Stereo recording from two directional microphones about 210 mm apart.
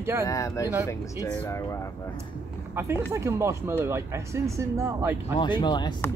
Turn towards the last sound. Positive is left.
turn(degrees=20)  # may be behind; listen again after turning